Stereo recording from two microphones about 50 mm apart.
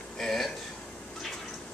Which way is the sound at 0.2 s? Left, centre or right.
Centre.